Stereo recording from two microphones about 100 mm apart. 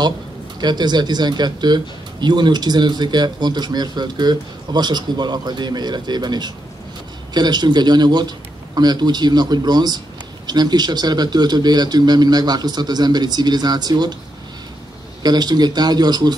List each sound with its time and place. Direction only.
0.6 s speech: 45° right (ahead or behind)
15.2 s speech: 45° right (ahead or behind)